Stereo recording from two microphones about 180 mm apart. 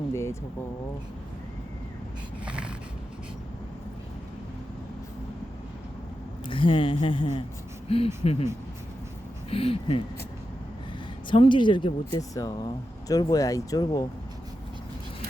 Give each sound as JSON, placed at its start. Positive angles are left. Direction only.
{"t": 0.1, "sound": "speech", "side_deg": 15}
{"t": 2.4, "sound": "a sound", "side_deg": -5}
{"t": 6.5, "sound": "speech", "side_deg": 30}
{"t": 9.5, "sound": "speech", "side_deg": 30}
{"t": 11.3, "sound": "speech", "side_deg": 25}